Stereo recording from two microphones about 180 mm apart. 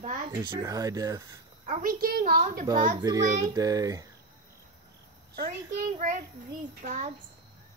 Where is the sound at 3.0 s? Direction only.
20° right (ahead or behind).